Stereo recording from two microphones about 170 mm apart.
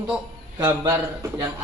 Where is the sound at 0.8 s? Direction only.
10° right (ahead or behind).